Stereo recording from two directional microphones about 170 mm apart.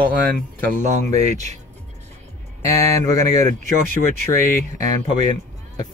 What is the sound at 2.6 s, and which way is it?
Speech, 20° left (ahead or behind).